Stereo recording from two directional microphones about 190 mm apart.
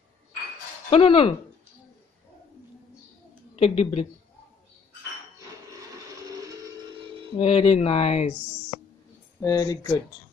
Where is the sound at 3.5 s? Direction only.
30° left (ahead or behind).